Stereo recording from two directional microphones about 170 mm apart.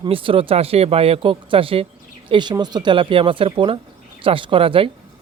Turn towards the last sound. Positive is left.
turn(degrees=-30)  # may be behind; listen again after turning